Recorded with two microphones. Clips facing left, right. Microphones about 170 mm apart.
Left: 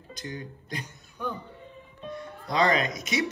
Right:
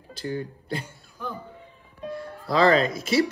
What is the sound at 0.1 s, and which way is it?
Speech, 30° right (ahead or behind).